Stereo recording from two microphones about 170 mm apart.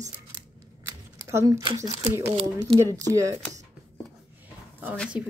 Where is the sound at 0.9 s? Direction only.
15° right (ahead or behind).